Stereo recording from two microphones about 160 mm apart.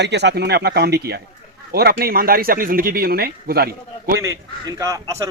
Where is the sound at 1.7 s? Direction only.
75° right (ahead or behind).